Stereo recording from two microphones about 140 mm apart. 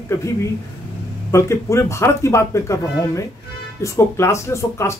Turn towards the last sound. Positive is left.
turn(degrees=20)  # may be behind; listen again after turning